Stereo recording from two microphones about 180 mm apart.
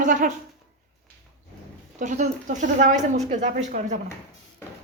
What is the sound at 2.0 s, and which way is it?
Speech, 45° right (ahead or behind).